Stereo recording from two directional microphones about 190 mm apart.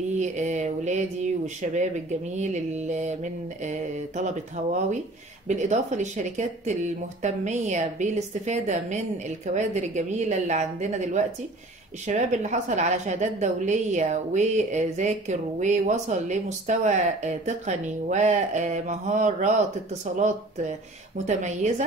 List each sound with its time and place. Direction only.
0.2 s a woman's voice: 40° right (ahead or behind)
5.5 s a woman's voice: 40° right (ahead or behind)